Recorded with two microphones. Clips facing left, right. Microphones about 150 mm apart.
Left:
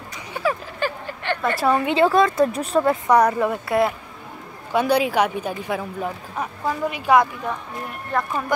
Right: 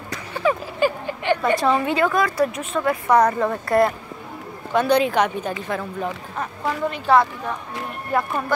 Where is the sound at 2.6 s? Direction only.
35° left (ahead or behind).